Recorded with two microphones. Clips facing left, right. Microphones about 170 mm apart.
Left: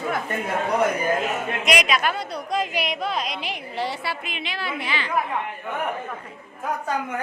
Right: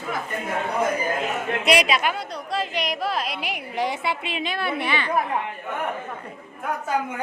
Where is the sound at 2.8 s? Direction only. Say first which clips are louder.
Right 1 dB; centre (ahead or behind); by 4.2 s 20° right (ahead or behind).